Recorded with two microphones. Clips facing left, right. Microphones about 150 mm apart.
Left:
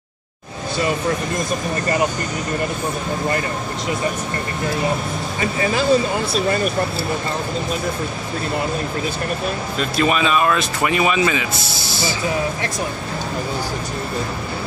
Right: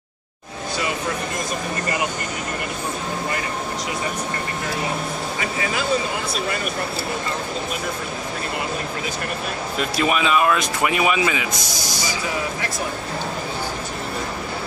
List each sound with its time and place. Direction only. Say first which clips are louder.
5.4 s speech: left 7 dB; 35° left (ahead or behind)
9.8 s speech: left 2 dB; 10° right (ahead or behind)